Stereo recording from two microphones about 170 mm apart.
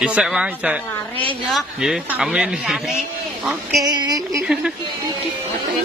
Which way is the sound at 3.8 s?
25° right (ahead or behind).